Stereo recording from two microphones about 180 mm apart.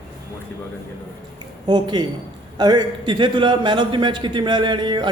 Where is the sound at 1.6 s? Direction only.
25° right (ahead or behind).